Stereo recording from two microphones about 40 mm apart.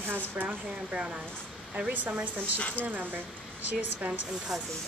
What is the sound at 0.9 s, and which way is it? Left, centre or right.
Speech, right.